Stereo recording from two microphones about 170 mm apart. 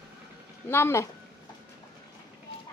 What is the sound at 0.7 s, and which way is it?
Speech, 15° left (ahead or behind).